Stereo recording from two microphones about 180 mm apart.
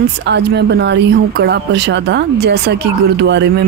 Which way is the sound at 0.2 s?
70° right (ahead or behind).